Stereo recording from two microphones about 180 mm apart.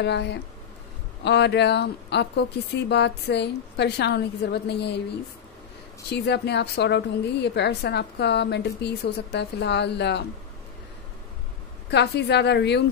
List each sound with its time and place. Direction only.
0.0 s a woman's voice: 70° left (ahead or behind)
6.0 s a woman's voice: 70° left (ahead or behind)
11.9 s a woman's voice: 70° left (ahead or behind)